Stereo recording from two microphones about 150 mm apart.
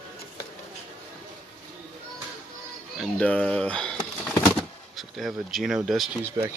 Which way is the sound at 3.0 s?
5° left (ahead or behind).